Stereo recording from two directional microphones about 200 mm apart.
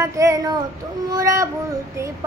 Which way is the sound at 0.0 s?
15° right (ahead or behind).